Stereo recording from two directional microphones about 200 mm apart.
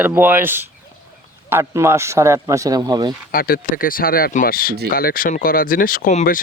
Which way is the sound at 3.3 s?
45° left (ahead or behind).